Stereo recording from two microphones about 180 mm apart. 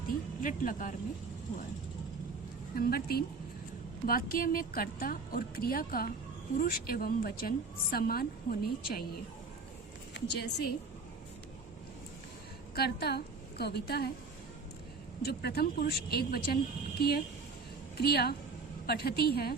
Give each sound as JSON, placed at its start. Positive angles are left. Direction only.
{"t": 0.4, "sound": "speech", "side_deg": 50}
{"t": 2.7, "sound": "a woman's voice", "side_deg": 55}
{"t": 10.2, "sound": "a woman's voice", "side_deg": 70}
{"t": 12.7, "sound": "a woman's voice", "side_deg": 60}
{"t": 15.2, "sound": "a woman's voice", "side_deg": 60}
{"t": 17.9, "sound": "a woman's voice", "side_deg": 60}